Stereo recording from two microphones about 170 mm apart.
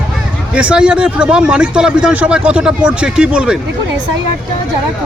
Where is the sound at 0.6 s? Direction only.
5° right (ahead or behind).